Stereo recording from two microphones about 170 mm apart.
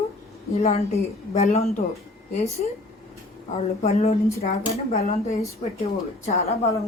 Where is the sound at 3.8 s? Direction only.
40° left (ahead or behind).